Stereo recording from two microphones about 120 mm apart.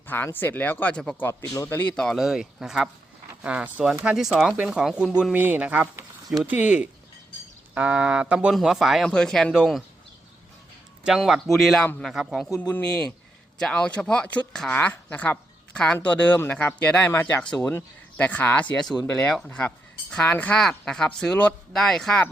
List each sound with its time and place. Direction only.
0.1 s speech: 15° left (ahead or behind)
1.3 s a man's voice: 25° left (ahead or behind)
2.0 s speech: centre (ahead or behind)
11.0 s speech: 5° right (ahead or behind)
12.7 s speech: 10° left (ahead or behind)